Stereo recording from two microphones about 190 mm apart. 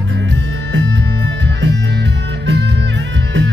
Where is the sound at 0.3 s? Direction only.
75° right (ahead or behind).